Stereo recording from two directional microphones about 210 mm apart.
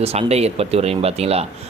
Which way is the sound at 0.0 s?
30° right (ahead or behind).